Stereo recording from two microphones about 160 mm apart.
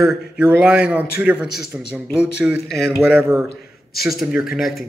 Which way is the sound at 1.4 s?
80° left.